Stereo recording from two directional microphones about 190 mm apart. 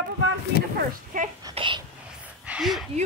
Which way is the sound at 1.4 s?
25° right (ahead or behind).